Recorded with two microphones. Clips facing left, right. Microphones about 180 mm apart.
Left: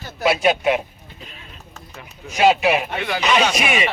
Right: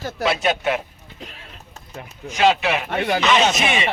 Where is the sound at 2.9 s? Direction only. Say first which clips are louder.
Right 4 dB; 40° right (ahead or behind).